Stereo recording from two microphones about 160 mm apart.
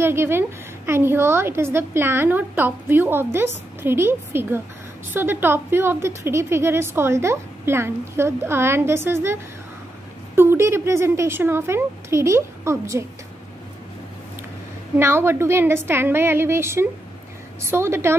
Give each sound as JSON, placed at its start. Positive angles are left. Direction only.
{"t": 0.0, "sound": "a woman's voice", "side_deg": -15}
{"t": 15.0, "sound": "a woman's voice", "side_deg": -15}